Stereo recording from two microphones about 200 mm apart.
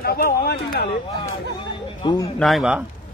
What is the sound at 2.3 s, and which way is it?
Speech, centre (ahead or behind).